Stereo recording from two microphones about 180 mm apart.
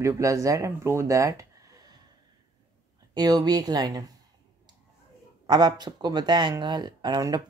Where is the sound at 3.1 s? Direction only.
20° right (ahead or behind).